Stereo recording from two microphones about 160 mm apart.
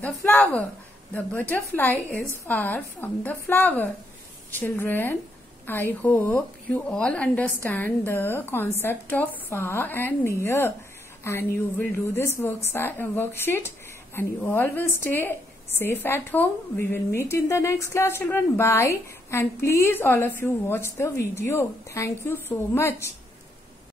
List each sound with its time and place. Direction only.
0.0 s speech: 10° left (ahead or behind)